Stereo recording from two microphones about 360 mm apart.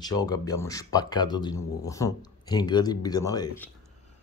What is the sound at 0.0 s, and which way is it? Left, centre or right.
Speech, centre.